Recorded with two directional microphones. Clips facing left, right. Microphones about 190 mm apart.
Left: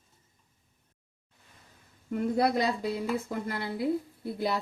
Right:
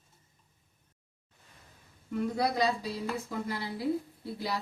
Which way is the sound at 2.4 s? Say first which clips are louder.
Left 3 dB; 55° left (ahead or behind).